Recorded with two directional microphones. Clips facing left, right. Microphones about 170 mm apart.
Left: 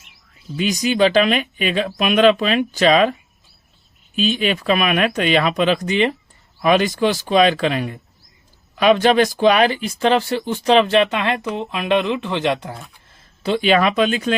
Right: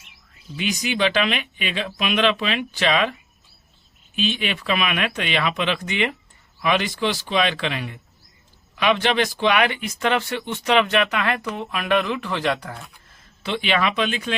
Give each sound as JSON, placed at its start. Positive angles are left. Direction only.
{"t": 0.5, "sound": "speech", "side_deg": 40}
{"t": 13.4, "sound": "speech", "side_deg": 40}